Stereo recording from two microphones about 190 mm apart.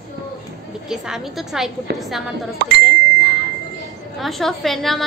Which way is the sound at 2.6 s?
65° right (ahead or behind).